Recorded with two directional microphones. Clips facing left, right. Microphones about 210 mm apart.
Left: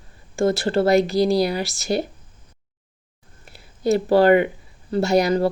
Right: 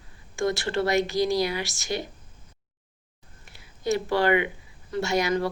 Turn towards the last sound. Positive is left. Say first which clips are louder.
# left 7 dB
turn(degrees=35)  # may be behind; listen again after turning